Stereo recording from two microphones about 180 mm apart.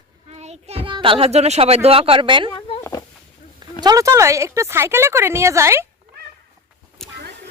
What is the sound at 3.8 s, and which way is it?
A woman's voice, 20° right (ahead or behind).